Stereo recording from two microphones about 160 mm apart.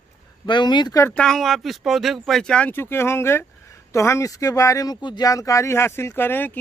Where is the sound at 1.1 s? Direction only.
5° left (ahead or behind).